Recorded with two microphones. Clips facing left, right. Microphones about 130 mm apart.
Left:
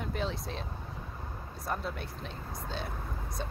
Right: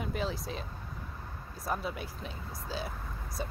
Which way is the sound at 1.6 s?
5° right (ahead or behind).